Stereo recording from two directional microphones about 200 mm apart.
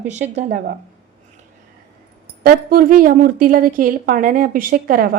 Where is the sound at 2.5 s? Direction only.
45° right (ahead or behind).